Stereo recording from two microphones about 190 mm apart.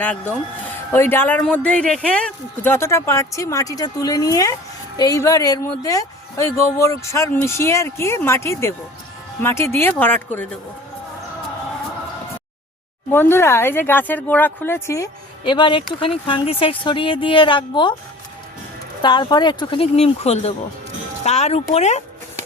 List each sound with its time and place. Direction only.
0.9 s speech: 10° left (ahead or behind)
13.1 s speech: 10° left (ahead or behind)
19.0 s speech: 20° left (ahead or behind)